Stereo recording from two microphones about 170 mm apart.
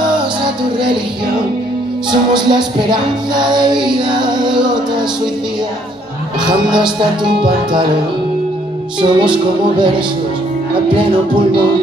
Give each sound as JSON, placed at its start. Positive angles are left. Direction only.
{"t": 2.3, "sound": "music", "side_deg": -25}
{"t": 6.4, "sound": "music", "side_deg": -5}
{"t": 9.0, "sound": "music", "side_deg": -30}